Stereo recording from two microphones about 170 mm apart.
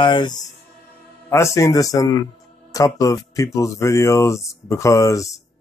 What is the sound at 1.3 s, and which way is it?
Speech, 15° left (ahead or behind).